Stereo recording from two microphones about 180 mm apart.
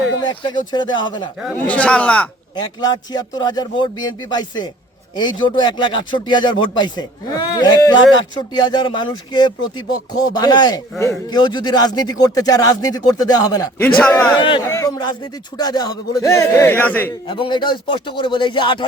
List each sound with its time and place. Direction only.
0.2 s speech: 25° left (ahead or behind)
1.6 s speech: 5° left (ahead or behind)
2.6 s speech: 25° left (ahead or behind)
14.0 s speech: 5° left (ahead or behind)
14.3 s speech: 30° left (ahead or behind)
14.7 s speech: 20° left (ahead or behind)
17.2 s speech: 25° left (ahead or behind)